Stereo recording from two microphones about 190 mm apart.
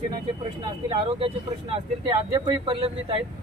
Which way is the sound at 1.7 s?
25° right (ahead or behind).